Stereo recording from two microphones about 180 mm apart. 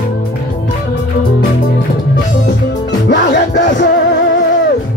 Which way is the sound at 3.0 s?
75° left (ahead or behind).